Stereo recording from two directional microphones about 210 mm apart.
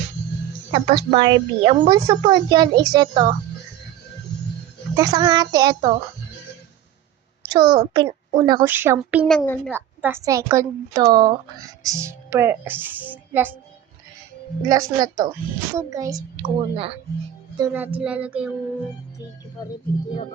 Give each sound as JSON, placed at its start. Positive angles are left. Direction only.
{"t": 0.7, "sound": "speech", "side_deg": -25}
{"t": 4.9, "sound": "speech", "side_deg": -20}
{"t": 7.5, "sound": "a woman's voice", "side_deg": -20}
{"t": 9.7, "sound": "a woman's voice", "side_deg": -10}
{"t": 14.7, "sound": "a woman's voice", "side_deg": -15}
{"t": 17.6, "sound": "a woman's voice", "side_deg": -10}